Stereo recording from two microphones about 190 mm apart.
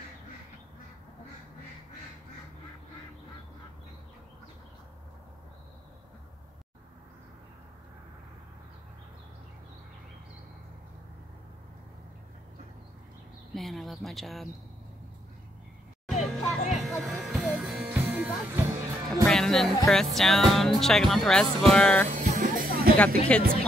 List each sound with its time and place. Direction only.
13.6 s speech: centre (ahead or behind)
16.3 s music: centre (ahead or behind)
19.2 s music: centre (ahead or behind)
20.2 s speech: centre (ahead or behind)
22.1 s music: 40° right (ahead or behind)
22.9 s speech: 5° left (ahead or behind)